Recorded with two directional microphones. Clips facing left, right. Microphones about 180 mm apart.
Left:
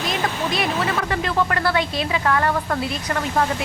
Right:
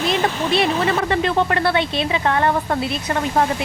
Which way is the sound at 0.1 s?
30° right (ahead or behind).